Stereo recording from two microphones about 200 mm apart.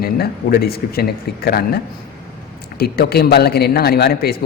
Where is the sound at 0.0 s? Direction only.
50° left (ahead or behind).